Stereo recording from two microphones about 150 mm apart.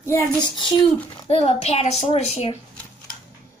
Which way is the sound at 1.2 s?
45° left (ahead or behind).